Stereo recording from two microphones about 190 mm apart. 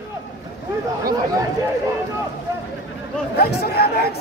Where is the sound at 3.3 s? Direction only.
55° left (ahead or behind).